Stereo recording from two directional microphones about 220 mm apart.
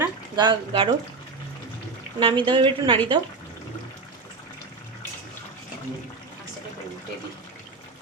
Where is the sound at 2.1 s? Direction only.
20° right (ahead or behind).